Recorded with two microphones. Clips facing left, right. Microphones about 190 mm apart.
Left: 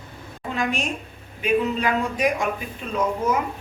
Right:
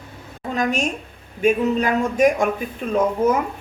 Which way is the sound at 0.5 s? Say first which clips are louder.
Right 4 dB; 45° right (ahead or behind).